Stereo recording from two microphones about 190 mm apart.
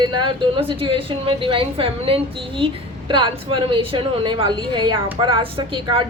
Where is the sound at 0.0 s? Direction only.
25° right (ahead or behind).